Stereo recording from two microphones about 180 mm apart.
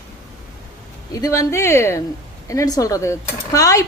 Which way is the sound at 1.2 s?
15° left (ahead or behind).